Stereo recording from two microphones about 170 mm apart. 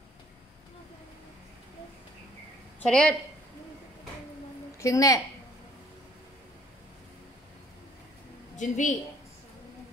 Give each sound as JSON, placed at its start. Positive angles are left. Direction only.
{"t": 2.8, "sound": "speech", "side_deg": 5}
{"t": 4.7, "sound": "a woman's voice", "side_deg": 20}
{"t": 8.5, "sound": "a woman's voice", "side_deg": 45}